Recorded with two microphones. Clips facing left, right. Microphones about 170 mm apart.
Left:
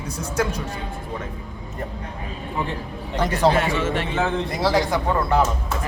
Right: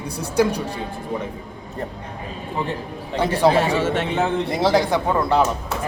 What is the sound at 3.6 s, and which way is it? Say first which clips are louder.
Speech: right 3 dB; 30° right (ahead or behind).